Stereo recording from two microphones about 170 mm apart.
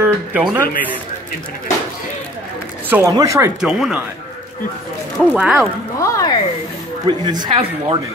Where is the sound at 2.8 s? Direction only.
10° right (ahead or behind).